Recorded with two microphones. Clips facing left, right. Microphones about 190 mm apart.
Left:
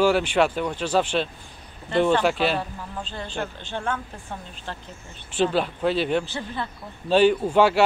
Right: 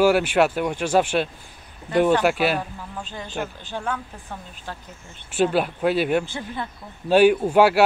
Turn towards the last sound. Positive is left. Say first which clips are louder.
# right 2 dB
turn(degrees=-10)  # may be behind; listen again after turning